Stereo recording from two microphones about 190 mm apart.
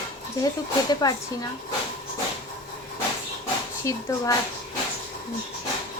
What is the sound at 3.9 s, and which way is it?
Speech, 15° left (ahead or behind).